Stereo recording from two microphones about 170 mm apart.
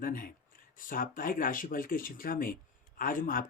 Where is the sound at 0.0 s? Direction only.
55° left (ahead or behind).